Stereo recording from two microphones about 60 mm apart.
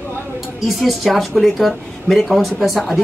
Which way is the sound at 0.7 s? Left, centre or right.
Centre.